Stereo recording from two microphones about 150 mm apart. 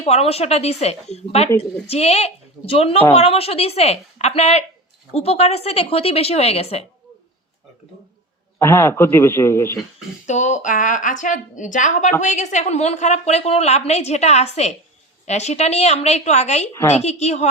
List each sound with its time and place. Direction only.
0.0 s a woman's voice: 45° left (ahead or behind)
8.5 s a man's voice: 15° left (ahead or behind)
10.2 s a woman's voice: 50° left (ahead or behind)